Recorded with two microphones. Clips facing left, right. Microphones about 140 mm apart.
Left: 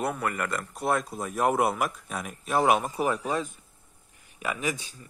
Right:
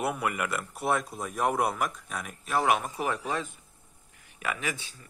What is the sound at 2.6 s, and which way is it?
Speech, 30° left (ahead or behind).